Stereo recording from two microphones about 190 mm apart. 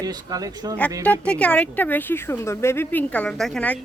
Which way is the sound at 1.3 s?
5° left (ahead or behind).